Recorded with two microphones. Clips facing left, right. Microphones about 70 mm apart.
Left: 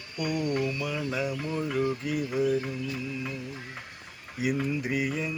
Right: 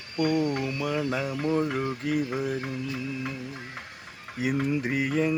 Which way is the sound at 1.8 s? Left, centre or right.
Right.